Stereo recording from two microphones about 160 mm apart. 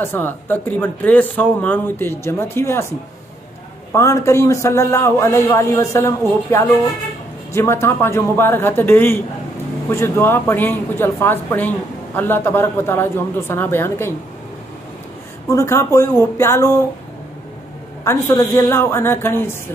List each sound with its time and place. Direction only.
0.0 s speech: 15° left (ahead or behind)
3.9 s speech: 20° left (ahead or behind)
15.4 s speech: 15° left (ahead or behind)
18.0 s speech: 15° left (ahead or behind)